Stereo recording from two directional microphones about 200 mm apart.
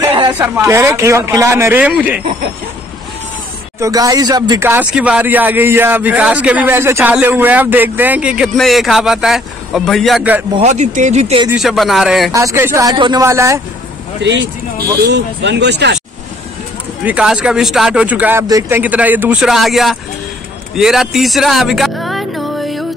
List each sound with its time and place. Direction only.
0.3 s speech: 10° right (ahead or behind)
3.8 s speech: 15° right (ahead or behind)
10.5 s speech: 35° right (ahead or behind)
11.5 s speech: centre (ahead or behind)
12.3 s speech: 15° right (ahead or behind)
14.2 s speech: 65° right (ahead or behind)
17.0 s speech: 5° right (ahead or behind)
20.7 s music: centre (ahead or behind)